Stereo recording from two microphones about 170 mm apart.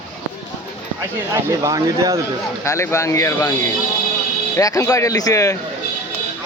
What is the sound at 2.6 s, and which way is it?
Speech, 15° left (ahead or behind).